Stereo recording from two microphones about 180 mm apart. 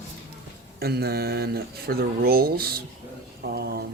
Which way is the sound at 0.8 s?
60° right (ahead or behind).